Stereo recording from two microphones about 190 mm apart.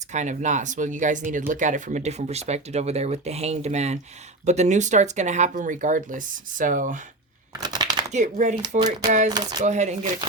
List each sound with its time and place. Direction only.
0.1 s speech: 40° right (ahead or behind)
7.6 s a sound: 20° right (ahead or behind)
8.1 s speech: 40° right (ahead or behind)
9.3 s speech: 20° right (ahead or behind)
9.6 s speech: 40° right (ahead or behind)